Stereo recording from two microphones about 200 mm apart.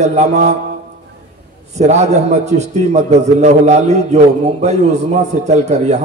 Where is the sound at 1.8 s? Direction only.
35° right (ahead or behind).